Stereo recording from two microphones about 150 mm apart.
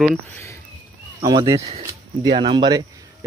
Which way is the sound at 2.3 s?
30° right (ahead or behind).